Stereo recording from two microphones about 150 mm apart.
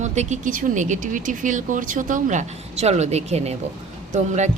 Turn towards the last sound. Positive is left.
turn(degrees=-50)  # may be behind; listen again after turning